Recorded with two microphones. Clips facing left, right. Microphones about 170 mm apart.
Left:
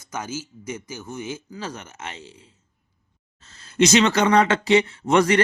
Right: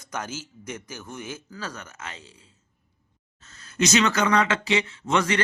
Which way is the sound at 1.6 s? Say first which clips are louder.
Left 3 dB; 25° left (ahead or behind).